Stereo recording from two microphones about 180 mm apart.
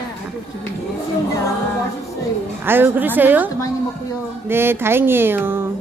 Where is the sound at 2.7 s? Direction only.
10° right (ahead or behind).